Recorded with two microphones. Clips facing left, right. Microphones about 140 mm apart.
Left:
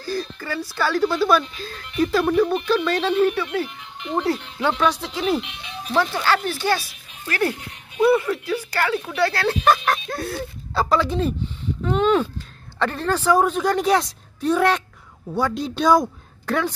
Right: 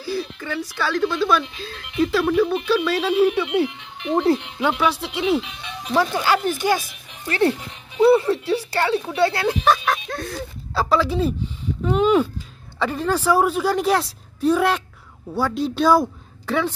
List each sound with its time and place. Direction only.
0.0 s a woman's voice: 5° right (ahead or behind)
5.9 s speech: 15° right (ahead or behind)
9.7 s a woman's voice: centre (ahead or behind)